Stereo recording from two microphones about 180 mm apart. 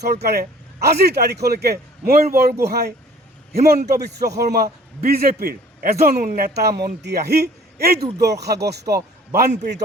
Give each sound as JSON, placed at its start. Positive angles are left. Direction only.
{"t": 0.0, "sound": "a man's voice", "side_deg": -65}